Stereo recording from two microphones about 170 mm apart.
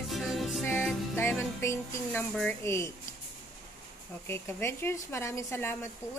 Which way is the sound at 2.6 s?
15° left (ahead or behind).